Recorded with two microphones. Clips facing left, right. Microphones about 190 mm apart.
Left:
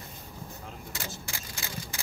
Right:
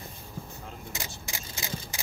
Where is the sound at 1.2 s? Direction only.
20° right (ahead or behind).